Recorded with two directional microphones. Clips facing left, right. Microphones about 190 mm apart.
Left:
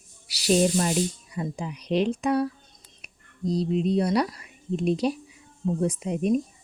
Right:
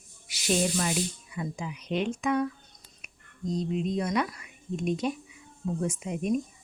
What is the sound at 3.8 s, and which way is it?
Speech, 35° left (ahead or behind).